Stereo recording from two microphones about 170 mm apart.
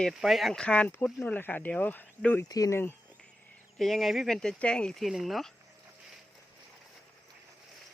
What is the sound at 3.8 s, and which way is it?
Speech, centre (ahead or behind).